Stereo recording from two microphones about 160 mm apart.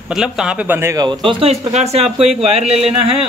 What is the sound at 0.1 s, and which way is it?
A man's voice, 5° right (ahead or behind).